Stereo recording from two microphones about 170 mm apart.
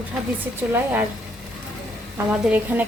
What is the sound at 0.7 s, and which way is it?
Speech, 10° right (ahead or behind).